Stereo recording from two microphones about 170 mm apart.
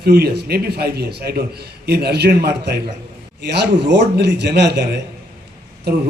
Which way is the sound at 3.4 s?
80° right.